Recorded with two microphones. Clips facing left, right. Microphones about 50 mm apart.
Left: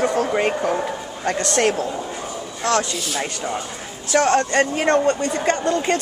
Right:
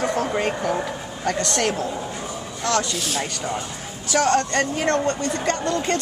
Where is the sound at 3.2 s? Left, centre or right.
Centre.